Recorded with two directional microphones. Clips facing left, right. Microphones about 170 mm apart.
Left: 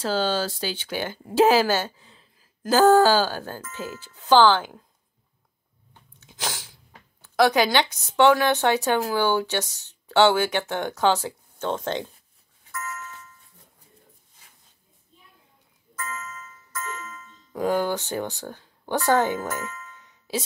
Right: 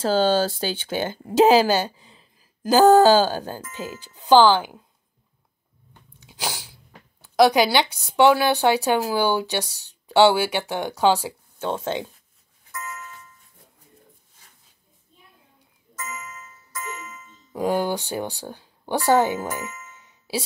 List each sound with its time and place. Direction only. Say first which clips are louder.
0.1 s speech: right 5 dB; 45° right (ahead or behind)
0.4 s speech: right 4 dB; 30° right (ahead or behind); by 4.8 s 10° right (ahead or behind)
6.1 s speech: right 2 dB; 15° right (ahead or behind)
12.7 s a sound: left 1 dB; 15° right (ahead or behind)
16.0 s music: left 1 dB; 15° right (ahead or behind)